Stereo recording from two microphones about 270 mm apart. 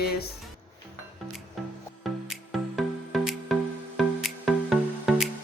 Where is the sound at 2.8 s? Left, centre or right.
Centre.